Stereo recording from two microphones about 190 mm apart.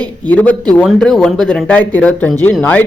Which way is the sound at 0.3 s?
10° left (ahead or behind).